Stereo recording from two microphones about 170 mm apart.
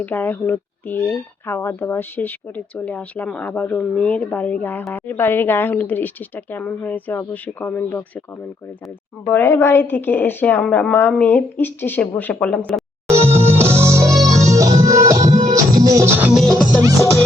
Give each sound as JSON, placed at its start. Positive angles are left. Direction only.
{"t": 0.0, "sound": "speech", "side_deg": 10}
{"t": 9.2, "sound": "speech", "side_deg": 15}
{"t": 13.1, "sound": "music", "side_deg": -15}
{"t": 15.2, "sound": "music", "side_deg": -50}
{"t": 15.5, "sound": "music", "side_deg": -20}
{"t": 16.3, "sound": "music", "side_deg": 0}